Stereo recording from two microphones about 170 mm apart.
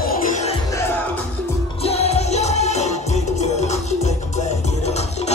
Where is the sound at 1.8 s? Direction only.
35° left (ahead or behind).